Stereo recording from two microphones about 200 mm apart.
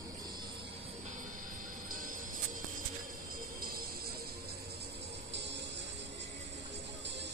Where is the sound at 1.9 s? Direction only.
40° right (ahead or behind).